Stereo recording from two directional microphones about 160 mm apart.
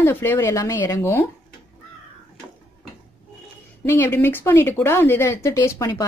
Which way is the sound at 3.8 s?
15° left (ahead or behind).